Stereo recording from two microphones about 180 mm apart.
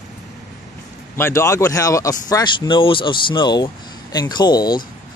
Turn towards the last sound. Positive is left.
turn(degrees=25)  # may be behind; listen again after turning